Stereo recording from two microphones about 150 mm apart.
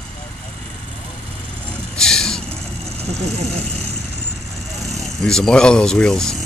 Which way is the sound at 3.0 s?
45° right (ahead or behind).